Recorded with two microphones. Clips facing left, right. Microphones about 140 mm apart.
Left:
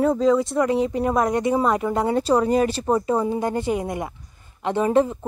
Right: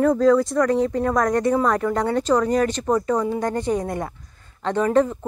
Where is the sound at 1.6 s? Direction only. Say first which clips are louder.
Even; 20° left (ahead or behind).